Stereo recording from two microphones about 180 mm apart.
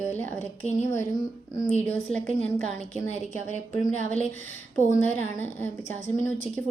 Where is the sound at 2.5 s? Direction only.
45° right (ahead or behind).